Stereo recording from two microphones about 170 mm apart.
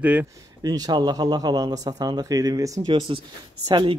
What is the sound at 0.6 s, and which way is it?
Speech, 25° right (ahead or behind).